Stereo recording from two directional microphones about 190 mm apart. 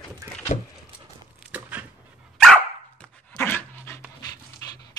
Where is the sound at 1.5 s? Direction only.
10° right (ahead or behind).